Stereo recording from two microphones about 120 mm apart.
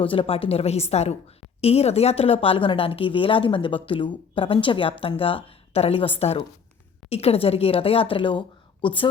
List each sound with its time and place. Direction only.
0.0 s a woman's voice: 50° left (ahead or behind)